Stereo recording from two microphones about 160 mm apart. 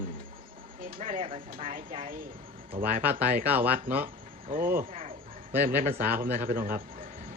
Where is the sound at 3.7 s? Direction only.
65° right (ahead or behind).